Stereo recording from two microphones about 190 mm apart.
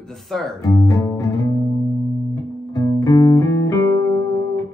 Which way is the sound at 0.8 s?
20° left (ahead or behind).